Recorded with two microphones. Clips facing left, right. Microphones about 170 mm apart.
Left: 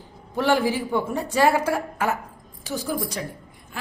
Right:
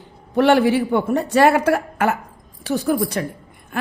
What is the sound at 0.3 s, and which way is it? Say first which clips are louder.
A woman's voice: right 7 dB; 65° right (ahead or behind).